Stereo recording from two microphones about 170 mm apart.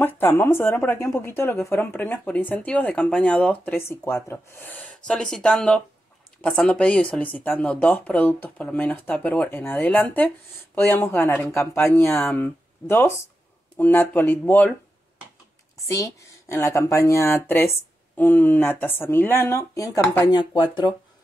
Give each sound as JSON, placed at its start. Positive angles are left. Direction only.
{"t": 0.0, "sound": "a woman's voice", "side_deg": 10}
{"t": 15.9, "sound": "a woman's voice", "side_deg": 15}
{"t": 20.2, "sound": "speech", "side_deg": 25}